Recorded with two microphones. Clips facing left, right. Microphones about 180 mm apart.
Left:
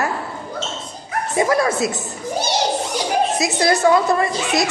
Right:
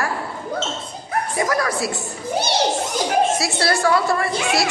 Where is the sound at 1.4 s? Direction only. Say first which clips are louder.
Left 5 dB; 25° left (ahead or behind).